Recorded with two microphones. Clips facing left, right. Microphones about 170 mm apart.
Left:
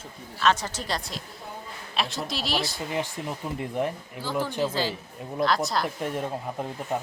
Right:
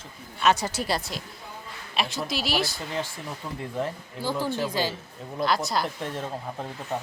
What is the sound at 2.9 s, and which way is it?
Speech, 15° left (ahead or behind).